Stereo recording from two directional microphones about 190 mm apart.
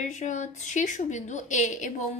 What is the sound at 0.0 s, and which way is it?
A woman's voice, 40° left (ahead or behind).